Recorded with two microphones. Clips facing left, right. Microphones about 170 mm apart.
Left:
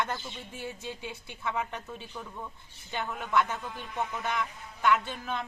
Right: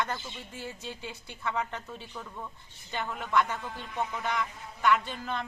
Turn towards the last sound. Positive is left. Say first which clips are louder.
# even
turn(degrees=10)  # may be behind; listen again after turning